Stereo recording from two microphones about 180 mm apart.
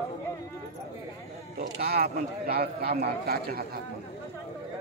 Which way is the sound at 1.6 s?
60° right (ahead or behind).